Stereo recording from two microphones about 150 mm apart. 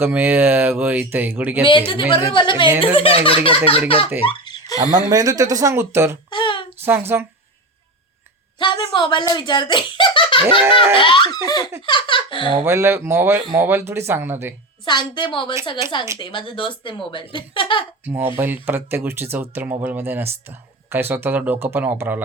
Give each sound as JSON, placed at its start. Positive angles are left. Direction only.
{"t": 0.0, "sound": "speech", "side_deg": -15}
{"t": 1.9, "sound": "speech", "side_deg": 35}
{"t": 4.3, "sound": "baby laughter", "side_deg": 30}
{"t": 4.8, "sound": "speech", "side_deg": -25}
{"t": 6.3, "sound": "a sound", "side_deg": 35}
{"t": 6.8, "sound": "speech", "side_deg": -15}
{"t": 8.5, "sound": "speech", "side_deg": 30}
{"t": 10.9, "sound": "laughter", "side_deg": 35}
{"t": 11.9, "sound": "giggle", "side_deg": 35}
{"t": 12.6, "sound": "speech", "side_deg": -15}
{"t": 14.8, "sound": "speech", "side_deg": 30}
{"t": 18.0, "sound": "speech", "side_deg": -15}